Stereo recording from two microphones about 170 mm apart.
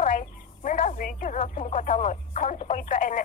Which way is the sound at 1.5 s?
45° left (ahead or behind).